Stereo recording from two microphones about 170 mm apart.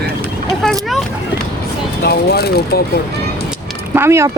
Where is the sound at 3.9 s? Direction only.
15° right (ahead or behind).